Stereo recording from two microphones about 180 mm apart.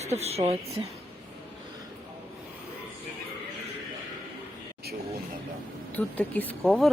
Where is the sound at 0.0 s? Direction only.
35° right (ahead or behind).